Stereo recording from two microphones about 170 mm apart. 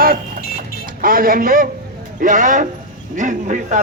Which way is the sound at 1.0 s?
55° right (ahead or behind).